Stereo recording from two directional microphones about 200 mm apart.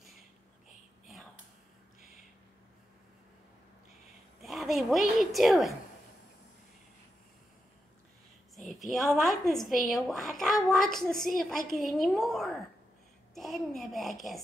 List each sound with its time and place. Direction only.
4.4 s a woman's voice: centre (ahead or behind)
8.5 s a woman's voice: centre (ahead or behind)